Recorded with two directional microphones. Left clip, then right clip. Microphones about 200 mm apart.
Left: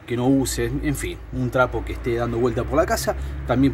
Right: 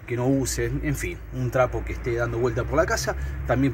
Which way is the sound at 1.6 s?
10° left (ahead or behind).